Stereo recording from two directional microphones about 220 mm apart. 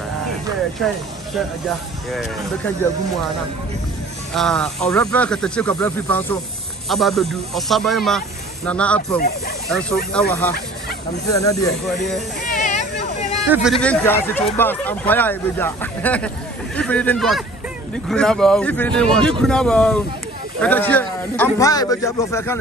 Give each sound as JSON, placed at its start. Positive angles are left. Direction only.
{"t": 2.0, "sound": "a man's voice", "side_deg": 0}
{"t": 4.3, "sound": "a man's voice", "side_deg": 0}
{"t": 11.2, "sound": "speech", "side_deg": 15}
{"t": 12.4, "sound": "a sound", "side_deg": 35}
{"t": 13.5, "sound": "a man's voice", "side_deg": -5}